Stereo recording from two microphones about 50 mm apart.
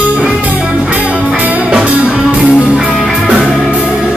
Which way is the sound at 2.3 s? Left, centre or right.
Centre.